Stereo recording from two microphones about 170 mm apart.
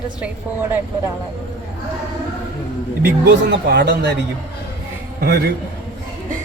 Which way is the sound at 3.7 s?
75° right (ahead or behind).